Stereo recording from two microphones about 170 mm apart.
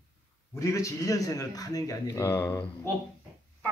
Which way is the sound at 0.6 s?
20° left (ahead or behind).